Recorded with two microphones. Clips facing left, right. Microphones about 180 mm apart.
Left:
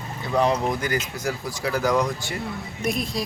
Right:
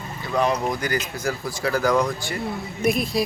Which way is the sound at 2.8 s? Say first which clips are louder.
Right 5 dB; 5° right (ahead or behind).